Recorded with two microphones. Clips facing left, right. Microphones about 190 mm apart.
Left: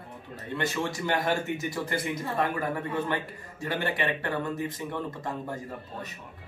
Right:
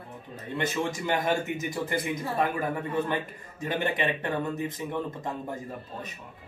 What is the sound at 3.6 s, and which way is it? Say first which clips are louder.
Speech: right 1 dB; 20° right (ahead or behind).